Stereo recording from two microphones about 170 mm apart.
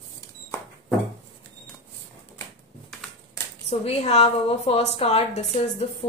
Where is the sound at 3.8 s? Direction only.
40° left (ahead or behind).